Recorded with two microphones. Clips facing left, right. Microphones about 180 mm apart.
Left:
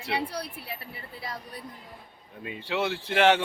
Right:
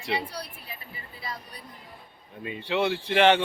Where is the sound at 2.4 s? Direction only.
5° left (ahead or behind).